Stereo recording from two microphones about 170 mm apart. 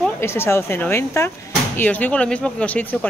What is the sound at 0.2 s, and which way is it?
Speech, 15° left (ahead or behind).